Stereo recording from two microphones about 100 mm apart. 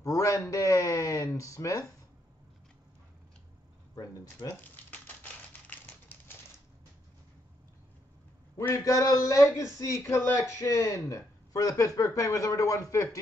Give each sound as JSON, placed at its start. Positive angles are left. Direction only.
{"t": 0.0, "sound": "speech", "side_deg": 35}
{"t": 3.9, "sound": "speech", "side_deg": 35}
{"t": 4.9, "sound": "typewriter", "side_deg": 15}
{"t": 8.8, "sound": "speech", "side_deg": 35}